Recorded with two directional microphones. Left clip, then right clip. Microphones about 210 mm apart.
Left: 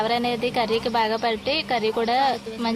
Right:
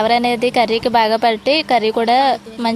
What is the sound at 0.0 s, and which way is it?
A woman's voice, 35° right (ahead or behind).